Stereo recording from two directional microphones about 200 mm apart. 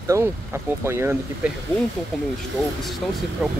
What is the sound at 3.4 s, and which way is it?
Speech, centre (ahead or behind).